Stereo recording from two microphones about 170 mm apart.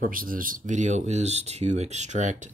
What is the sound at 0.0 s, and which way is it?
Speech, 55° right (ahead or behind).